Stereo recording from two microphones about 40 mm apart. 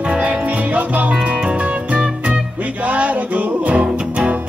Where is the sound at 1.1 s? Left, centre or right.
Right.